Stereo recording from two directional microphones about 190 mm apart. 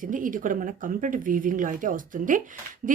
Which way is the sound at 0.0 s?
45° right (ahead or behind).